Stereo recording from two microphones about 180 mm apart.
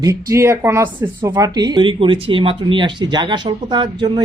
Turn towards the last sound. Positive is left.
turn(degrees=-25)  # may be behind; listen again after turning